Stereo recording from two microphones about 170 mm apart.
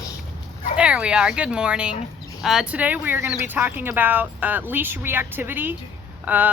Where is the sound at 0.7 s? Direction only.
5° right (ahead or behind).